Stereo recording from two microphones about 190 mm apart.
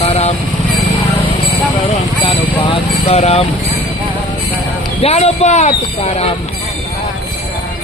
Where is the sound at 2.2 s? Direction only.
30° left (ahead or behind).